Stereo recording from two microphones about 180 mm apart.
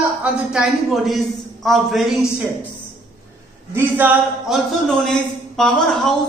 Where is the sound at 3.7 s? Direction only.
10° right (ahead or behind).